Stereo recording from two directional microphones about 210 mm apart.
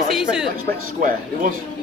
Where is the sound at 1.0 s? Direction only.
40° right (ahead or behind).